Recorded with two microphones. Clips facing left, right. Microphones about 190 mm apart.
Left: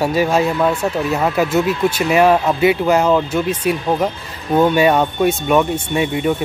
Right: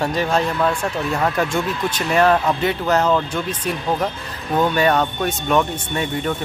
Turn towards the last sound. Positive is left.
turn(degrees=10)  # may be behind; listen again after turning